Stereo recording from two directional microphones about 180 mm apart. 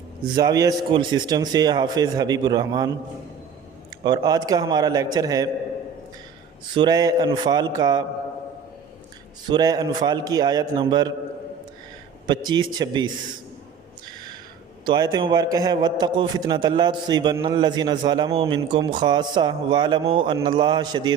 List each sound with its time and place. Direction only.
0.3 s a man's voice: 20° right (ahead or behind)
4.0 s a man's voice: 20° right (ahead or behind)
6.7 s a man's voice: 20° right (ahead or behind)
9.5 s a man's voice: 20° right (ahead or behind)
12.2 s a man's voice: 25° right (ahead or behind)
14.8 s a man's voice: 25° right (ahead or behind)